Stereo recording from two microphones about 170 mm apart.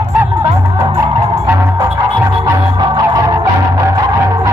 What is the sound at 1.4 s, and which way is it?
Music, 20° right (ahead or behind).